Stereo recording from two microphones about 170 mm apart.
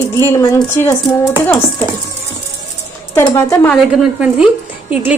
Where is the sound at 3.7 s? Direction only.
5° right (ahead or behind).